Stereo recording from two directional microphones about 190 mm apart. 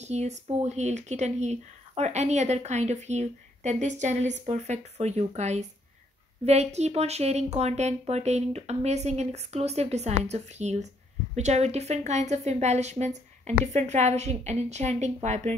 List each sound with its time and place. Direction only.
0.0 s speech: 35° right (ahead or behind)